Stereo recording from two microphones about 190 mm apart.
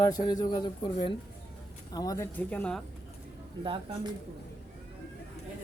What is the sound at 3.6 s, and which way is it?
Speech, 25° right (ahead or behind).